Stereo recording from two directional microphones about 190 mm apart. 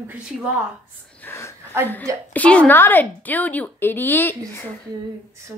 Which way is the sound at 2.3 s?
5° left (ahead or behind).